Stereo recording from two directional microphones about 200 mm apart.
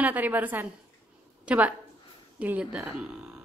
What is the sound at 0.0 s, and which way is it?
A woman's voice, 10° right (ahead or behind).